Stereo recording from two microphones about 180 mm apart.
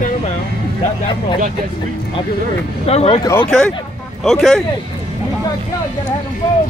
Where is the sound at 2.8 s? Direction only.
35° left (ahead or behind).